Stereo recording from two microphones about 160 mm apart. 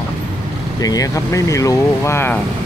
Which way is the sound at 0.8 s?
20° left (ahead or behind).